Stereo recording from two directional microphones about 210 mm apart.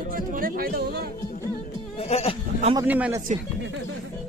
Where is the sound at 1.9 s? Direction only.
30° left (ahead or behind).